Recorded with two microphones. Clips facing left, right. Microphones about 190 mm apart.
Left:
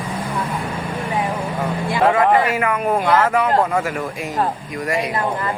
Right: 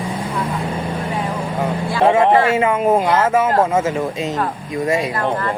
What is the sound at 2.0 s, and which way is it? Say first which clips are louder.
Speech: right 2 dB; 25° right (ahead or behind).